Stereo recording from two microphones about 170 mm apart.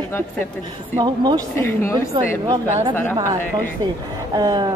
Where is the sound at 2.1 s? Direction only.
30° right (ahead or behind).